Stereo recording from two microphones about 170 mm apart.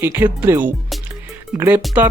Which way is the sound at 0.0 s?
15° right (ahead or behind).